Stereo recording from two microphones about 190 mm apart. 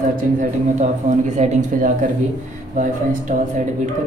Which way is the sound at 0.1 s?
40° right (ahead or behind).